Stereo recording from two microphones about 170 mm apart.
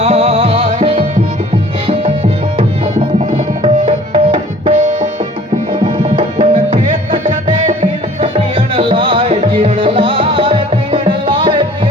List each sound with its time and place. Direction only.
0.0 s music: 40° right (ahead or behind)
3.6 s tabla: 30° right (ahead or behind)
5.8 s tabla: 40° right (ahead or behind)
7.4 s music: 30° right (ahead or behind)